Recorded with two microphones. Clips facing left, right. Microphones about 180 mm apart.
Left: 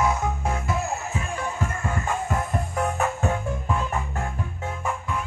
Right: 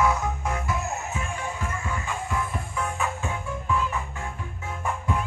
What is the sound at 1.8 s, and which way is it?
Music, 50° left (ahead or behind).